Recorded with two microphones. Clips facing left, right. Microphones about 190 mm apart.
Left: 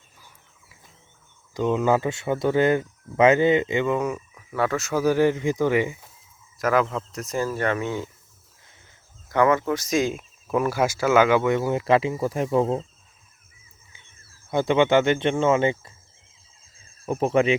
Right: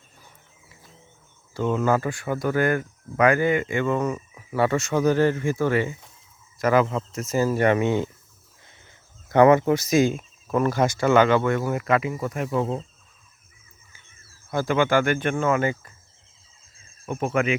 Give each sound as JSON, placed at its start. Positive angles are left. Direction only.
{"t": 1.5, "sound": "speech", "side_deg": 15}
{"t": 4.4, "sound": "speech", "side_deg": 0}
{"t": 6.6, "sound": "speech", "side_deg": 0}
{"t": 9.3, "sound": "speech", "side_deg": -20}
{"t": 14.5, "sound": "speech", "side_deg": 20}
{"t": 17.1, "sound": "speech", "side_deg": 35}